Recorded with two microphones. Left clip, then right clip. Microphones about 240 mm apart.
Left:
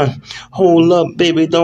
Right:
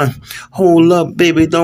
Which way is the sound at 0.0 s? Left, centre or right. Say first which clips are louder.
Left 1 dB; right.